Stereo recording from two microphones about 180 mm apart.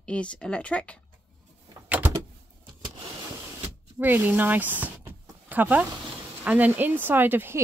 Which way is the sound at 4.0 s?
10° right (ahead or behind).